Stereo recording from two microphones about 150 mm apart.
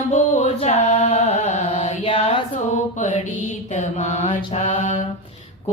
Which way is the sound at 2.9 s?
55° left (ahead or behind).